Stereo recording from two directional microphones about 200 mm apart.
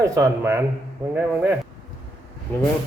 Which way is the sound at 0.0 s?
15° right (ahead or behind).